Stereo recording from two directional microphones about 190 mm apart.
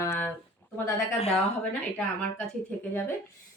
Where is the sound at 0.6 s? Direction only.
10° left (ahead or behind).